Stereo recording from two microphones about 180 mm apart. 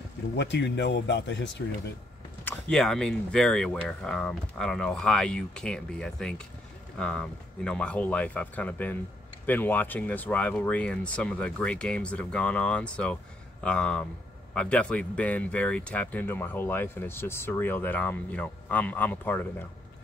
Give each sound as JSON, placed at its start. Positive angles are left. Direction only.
{"t": 0.4, "sound": "speech", "side_deg": 75}
{"t": 2.4, "sound": "speech", "side_deg": 5}